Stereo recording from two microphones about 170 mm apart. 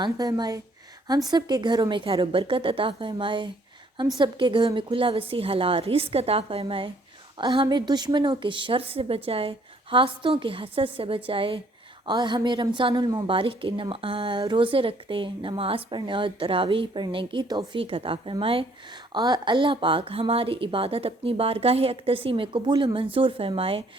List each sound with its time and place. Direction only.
0.0 s a woman's voice: 25° right (ahead or behind)